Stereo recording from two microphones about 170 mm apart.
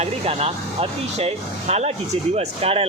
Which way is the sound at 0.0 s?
35° right (ahead or behind).